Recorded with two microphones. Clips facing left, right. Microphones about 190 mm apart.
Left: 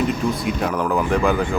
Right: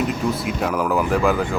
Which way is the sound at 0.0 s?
5° right (ahead or behind).